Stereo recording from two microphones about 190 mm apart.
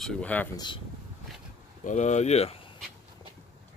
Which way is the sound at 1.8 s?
40° left (ahead or behind).